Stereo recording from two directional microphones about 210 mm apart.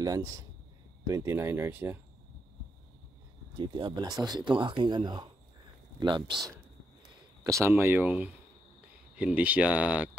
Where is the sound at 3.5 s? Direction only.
20° right (ahead or behind).